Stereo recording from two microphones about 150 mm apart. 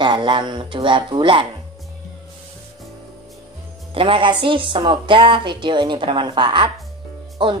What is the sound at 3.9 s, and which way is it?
Speech, 35° right (ahead or behind).